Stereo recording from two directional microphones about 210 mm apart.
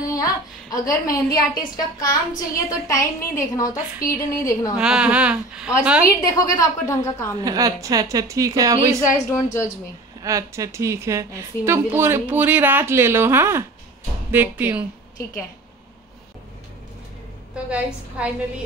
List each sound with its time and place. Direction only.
0.1 s a woman's voice: 15° left (ahead or behind)
4.7 s a woman's voice: 5° right (ahead or behind)
6.0 s a woman's voice: 15° left (ahead or behind)
7.4 s a woman's voice: 15° right (ahead or behind)
9.1 s a woman's voice: 15° left (ahead or behind)
10.2 s a woman's voice: 15° right (ahead or behind)
17.6 s a woman's voice: 5° right (ahead or behind)